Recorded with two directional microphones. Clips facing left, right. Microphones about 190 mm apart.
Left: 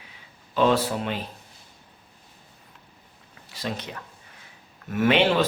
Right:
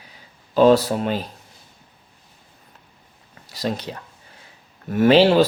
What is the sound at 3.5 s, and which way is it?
Speech, 40° right (ahead or behind).